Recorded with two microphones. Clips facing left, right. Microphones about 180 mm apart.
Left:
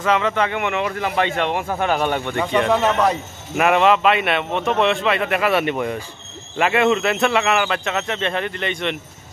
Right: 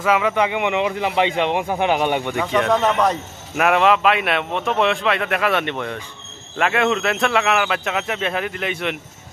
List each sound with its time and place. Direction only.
0.0 s a man's voice: 10° right (ahead or behind)
2.3 s speech: centre (ahead or behind)